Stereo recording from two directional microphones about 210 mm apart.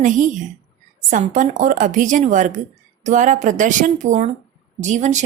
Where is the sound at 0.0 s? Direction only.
35° right (ahead or behind).